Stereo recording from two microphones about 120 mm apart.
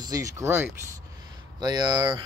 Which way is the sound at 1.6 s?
35° right (ahead or behind).